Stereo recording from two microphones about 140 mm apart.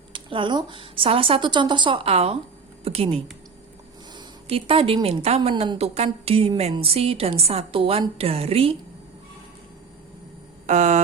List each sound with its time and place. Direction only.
0.1 s a woman's voice: 35° right (ahead or behind)
4.4 s a woman's voice: 40° right (ahead or behind)
10.7 s a sound: 55° right (ahead or behind)